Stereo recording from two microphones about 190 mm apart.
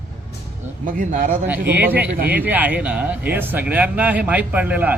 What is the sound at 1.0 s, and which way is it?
Speech, 45° right (ahead or behind).